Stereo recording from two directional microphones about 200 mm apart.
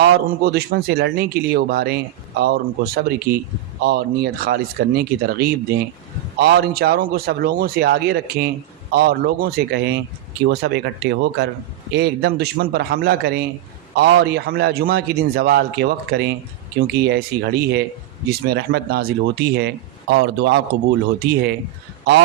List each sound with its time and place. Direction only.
0.0 s a man's voice: 50° right (ahead or behind)